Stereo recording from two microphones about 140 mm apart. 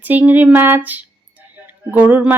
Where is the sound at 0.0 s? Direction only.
10° right (ahead or behind).